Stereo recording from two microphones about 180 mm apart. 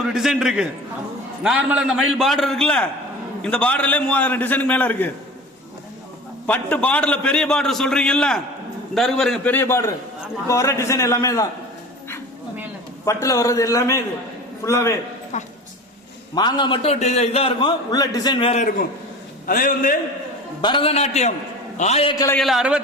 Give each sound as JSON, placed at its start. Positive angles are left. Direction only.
{"t": 0.0, "sound": "a man's voice", "side_deg": -5}
{"t": 6.4, "sound": "a man's voice", "side_deg": 5}
{"t": 13.1, "sound": "a man's voice", "side_deg": 15}
{"t": 16.3, "sound": "a man's voice", "side_deg": 25}
{"t": 19.5, "sound": "a man's voice", "side_deg": 50}
{"t": 20.6, "sound": "a man's voice", "side_deg": 25}
{"t": 22.4, "sound": "a man's voice", "side_deg": 0}